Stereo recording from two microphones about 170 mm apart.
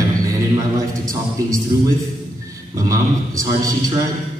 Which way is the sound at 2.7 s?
20° right (ahead or behind).